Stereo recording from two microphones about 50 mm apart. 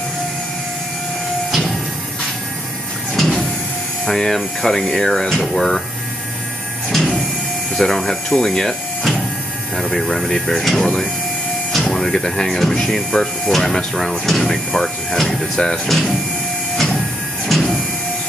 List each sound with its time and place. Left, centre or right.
3.2 s printer: centre
4.0 s speech: centre
6.9 s printer: centre
7.7 s speech: centre
14.7 s speech: centre
16.7 s printer: centre